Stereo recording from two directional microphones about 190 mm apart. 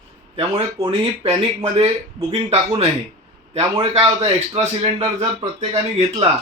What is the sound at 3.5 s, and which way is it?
A man's voice, 25° right (ahead or behind).